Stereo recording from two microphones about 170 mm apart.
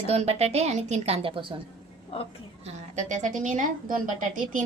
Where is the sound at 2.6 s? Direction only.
45° right (ahead or behind).